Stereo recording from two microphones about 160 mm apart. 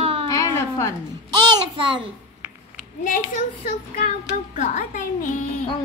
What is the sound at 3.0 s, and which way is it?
Speech, 55° left (ahead or behind).